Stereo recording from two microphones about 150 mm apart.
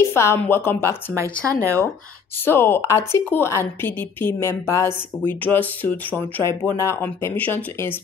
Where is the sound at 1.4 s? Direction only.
20° right (ahead or behind).